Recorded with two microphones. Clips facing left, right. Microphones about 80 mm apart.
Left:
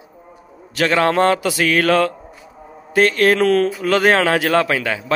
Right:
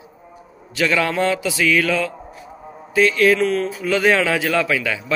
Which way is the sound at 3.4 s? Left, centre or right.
Left.